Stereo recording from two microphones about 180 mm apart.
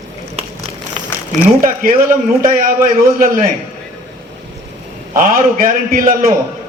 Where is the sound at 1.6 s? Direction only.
50° right (ahead or behind).